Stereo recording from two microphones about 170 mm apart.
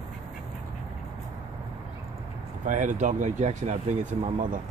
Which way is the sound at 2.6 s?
50° right (ahead or behind).